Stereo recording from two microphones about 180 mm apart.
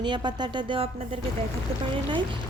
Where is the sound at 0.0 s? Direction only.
25° right (ahead or behind).